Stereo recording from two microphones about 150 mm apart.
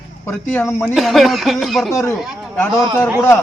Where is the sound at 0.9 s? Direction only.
Centre (ahead or behind).